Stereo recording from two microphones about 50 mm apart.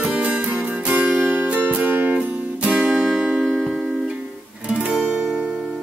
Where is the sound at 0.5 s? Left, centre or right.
Centre.